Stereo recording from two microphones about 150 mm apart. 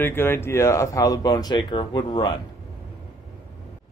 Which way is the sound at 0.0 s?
15° left (ahead or behind).